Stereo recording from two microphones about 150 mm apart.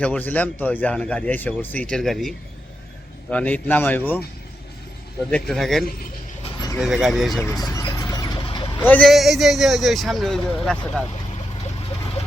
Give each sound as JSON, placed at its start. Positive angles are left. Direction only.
{"t": 0.0, "sound": "speech", "side_deg": 10}
{"t": 5.3, "sound": "speech", "side_deg": 0}
{"t": 7.6, "sound": "vehicle", "side_deg": 25}
{"t": 8.8, "sound": "speech", "side_deg": 10}
{"t": 9.0, "sound": "speech", "side_deg": 0}